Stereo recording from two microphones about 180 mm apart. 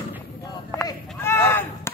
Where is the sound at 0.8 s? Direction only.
15° left (ahead or behind).